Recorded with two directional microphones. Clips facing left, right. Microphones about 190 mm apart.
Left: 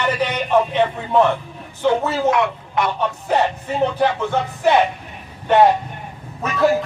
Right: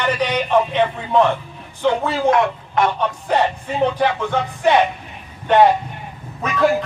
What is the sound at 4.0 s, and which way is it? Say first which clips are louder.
Speech: even; 5° left (ahead or behind).